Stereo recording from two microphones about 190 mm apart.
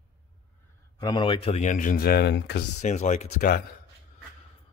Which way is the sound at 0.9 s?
25° left (ahead or behind).